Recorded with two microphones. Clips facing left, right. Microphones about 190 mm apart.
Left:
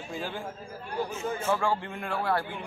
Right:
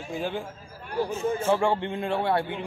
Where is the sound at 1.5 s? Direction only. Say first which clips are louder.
Right 4 dB; 25° right (ahead or behind).